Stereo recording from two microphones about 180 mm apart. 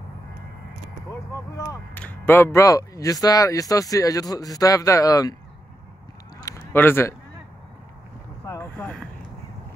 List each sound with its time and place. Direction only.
1.6 s speech: 15° left (ahead or behind)
6.6 s speech: 10° left (ahead or behind)
8.5 s speech: 15° left (ahead or behind)